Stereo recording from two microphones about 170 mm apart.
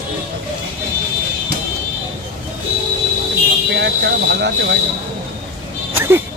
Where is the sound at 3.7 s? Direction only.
90° right.